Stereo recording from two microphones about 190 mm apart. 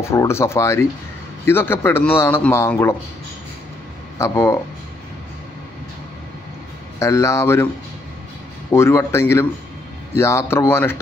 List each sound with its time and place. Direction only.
0.0 s a man's voice: 15° left (ahead or behind)
4.2 s a man's voice: 15° left (ahead or behind)
7.0 s a man's voice: 15° left (ahead or behind)
8.7 s a man's voice: 15° left (ahead or behind)